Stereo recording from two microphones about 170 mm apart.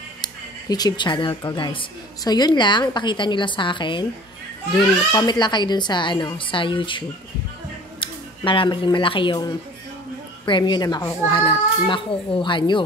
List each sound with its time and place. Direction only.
0.2 s speech: 25° left (ahead or behind)
5.1 s speech: 25° left (ahead or behind)